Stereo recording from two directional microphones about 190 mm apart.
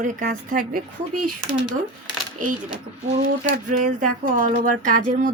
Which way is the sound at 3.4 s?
45° right (ahead or behind).